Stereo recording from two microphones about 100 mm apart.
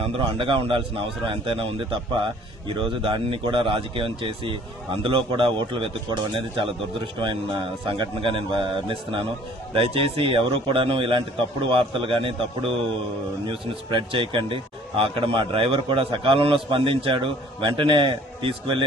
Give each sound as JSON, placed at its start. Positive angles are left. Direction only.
{"t": 0.0, "sound": "a man's voice", "side_deg": -60}